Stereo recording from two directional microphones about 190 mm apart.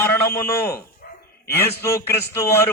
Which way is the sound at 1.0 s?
50° left (ahead or behind).